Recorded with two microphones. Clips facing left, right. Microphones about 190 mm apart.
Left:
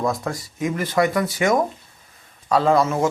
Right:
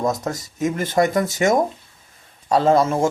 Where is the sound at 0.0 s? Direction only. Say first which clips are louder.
Right 1 dB; 20° right (ahead or behind).